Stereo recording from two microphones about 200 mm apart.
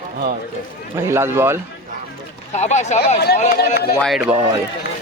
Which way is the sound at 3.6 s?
50° left (ahead or behind).